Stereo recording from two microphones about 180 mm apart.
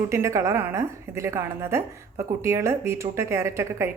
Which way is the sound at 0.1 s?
15° right (ahead or behind).